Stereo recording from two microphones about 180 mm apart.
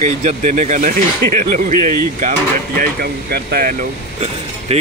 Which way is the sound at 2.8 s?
60° right (ahead or behind).